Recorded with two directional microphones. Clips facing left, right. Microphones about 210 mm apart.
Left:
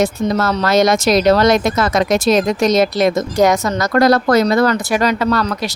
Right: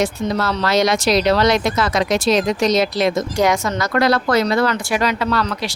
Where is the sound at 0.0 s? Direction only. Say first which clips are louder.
Left 3 dB; 45° left (ahead or behind).